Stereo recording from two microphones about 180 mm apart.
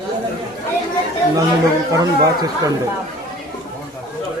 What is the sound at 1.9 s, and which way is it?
Speech, 20° right (ahead or behind).